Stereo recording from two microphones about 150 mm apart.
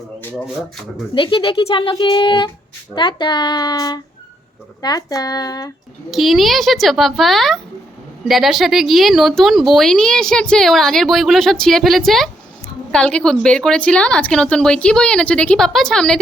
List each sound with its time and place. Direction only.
1.1 s a child's voice: 35° left (ahead or behind)
6.1 s speech: centre (ahead or behind)